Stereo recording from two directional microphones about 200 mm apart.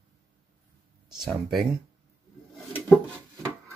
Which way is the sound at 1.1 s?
Centre (ahead or behind).